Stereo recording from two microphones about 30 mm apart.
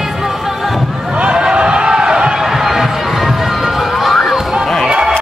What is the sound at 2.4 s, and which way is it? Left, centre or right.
Crowd, centre.